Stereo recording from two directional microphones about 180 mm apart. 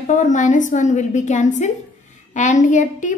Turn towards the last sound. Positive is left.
turn(degrees=45)  # may be behind; listen again after turning